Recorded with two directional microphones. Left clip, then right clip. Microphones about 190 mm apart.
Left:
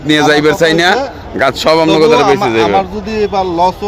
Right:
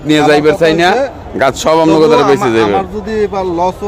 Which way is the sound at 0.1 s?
10° left (ahead or behind).